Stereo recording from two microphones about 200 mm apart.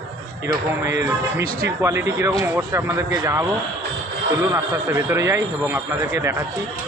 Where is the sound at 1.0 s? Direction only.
15° right (ahead or behind).